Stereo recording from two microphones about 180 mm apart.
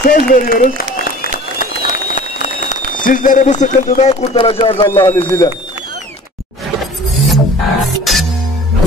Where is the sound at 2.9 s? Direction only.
50° left (ahead or behind); by 4.8 s 30° left (ahead or behind).